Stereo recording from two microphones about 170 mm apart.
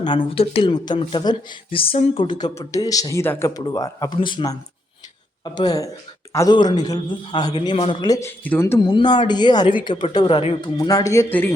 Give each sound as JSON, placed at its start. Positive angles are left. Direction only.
{"t": 0.0, "sound": "a woman's voice", "side_deg": 30}
{"t": 8.8, "sound": "speech", "side_deg": 25}
{"t": 10.8, "sound": "speech", "side_deg": 20}